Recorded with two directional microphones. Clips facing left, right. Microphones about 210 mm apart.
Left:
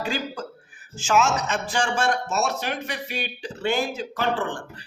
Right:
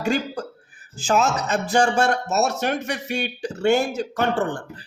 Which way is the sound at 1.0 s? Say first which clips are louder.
Right 1 dB; 35° right (ahead or behind).